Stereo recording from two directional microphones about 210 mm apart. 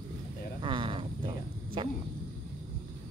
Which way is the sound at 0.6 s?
25° right (ahead or behind).